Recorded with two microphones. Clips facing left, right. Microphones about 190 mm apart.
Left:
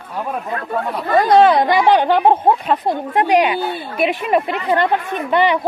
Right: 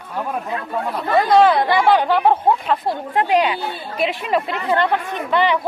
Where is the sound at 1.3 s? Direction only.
20° left (ahead or behind).